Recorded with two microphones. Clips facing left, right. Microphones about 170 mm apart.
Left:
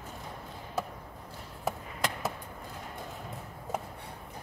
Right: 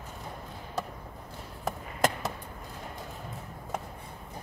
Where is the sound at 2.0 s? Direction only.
45° right (ahead or behind).